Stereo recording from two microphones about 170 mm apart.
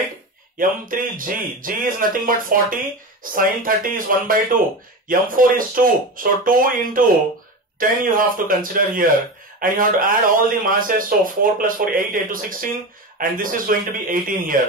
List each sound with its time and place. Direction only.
0.6 s speech: 55° right (ahead or behind)